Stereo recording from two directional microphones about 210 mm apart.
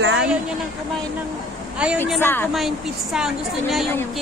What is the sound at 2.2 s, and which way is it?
Speech, 10° left (ahead or behind).